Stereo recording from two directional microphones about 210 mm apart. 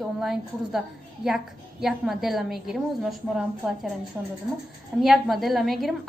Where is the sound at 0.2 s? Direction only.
Centre (ahead or behind).